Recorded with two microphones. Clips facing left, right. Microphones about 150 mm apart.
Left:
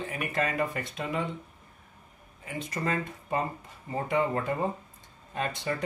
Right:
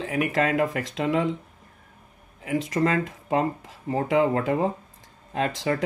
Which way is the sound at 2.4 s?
90° right.